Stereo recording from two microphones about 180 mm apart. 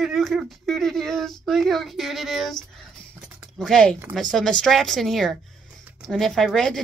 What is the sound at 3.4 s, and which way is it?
A woman's voice, centre (ahead or behind).